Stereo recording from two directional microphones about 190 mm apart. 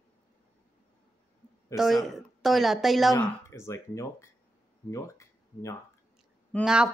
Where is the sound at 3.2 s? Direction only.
15° left (ahead or behind).